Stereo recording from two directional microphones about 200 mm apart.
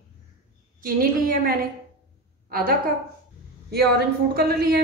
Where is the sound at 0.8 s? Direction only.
45° right (ahead or behind).